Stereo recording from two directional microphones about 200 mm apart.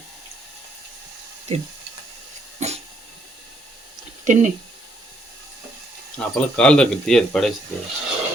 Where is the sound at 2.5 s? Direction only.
35° right (ahead or behind).